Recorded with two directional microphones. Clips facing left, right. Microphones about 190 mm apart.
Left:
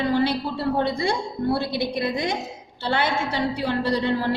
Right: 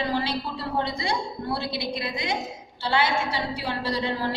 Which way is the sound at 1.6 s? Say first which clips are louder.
Left 5 dB; 55° left (ahead or behind).